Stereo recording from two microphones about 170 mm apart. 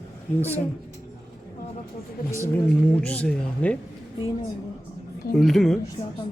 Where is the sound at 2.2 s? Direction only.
60° left (ahead or behind).